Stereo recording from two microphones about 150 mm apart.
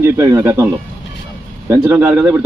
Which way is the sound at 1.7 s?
15° right (ahead or behind).